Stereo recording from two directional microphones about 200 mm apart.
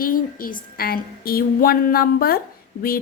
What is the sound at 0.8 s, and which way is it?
A woman's voice, 50° left (ahead or behind).